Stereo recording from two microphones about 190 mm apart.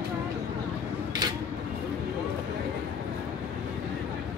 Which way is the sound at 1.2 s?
20° right (ahead or behind).